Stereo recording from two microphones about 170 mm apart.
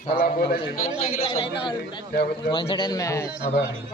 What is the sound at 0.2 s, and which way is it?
Speech, 65° left (ahead or behind).